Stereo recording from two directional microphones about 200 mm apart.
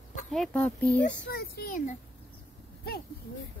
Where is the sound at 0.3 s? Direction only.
Centre (ahead or behind).